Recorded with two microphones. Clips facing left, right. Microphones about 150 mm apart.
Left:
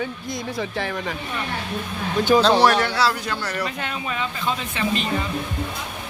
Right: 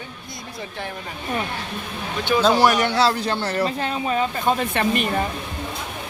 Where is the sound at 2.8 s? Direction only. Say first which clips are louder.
Right 2 dB; 25° right (ahead or behind); by 5.2 s 55° right (ahead or behind).